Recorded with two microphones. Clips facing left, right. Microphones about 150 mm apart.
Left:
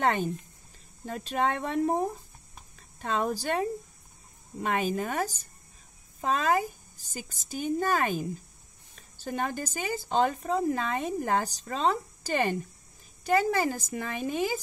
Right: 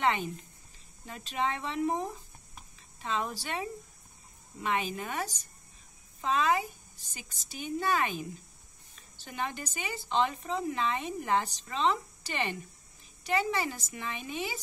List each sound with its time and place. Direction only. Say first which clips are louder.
0.0 s a woman's voice: left 3 dB; 45° left (ahead or behind)
6.2 s a woman's voice: left 2 dB; 45° left (ahead or behind)